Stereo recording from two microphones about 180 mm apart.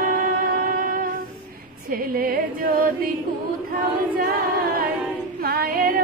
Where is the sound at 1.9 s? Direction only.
55° right (ahead or behind).